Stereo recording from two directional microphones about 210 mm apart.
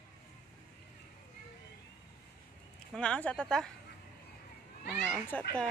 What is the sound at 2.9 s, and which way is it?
Speech, 5° left (ahead or behind).